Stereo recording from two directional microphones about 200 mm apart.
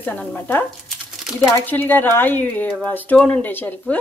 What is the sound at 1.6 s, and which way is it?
Speech, 10° left (ahead or behind).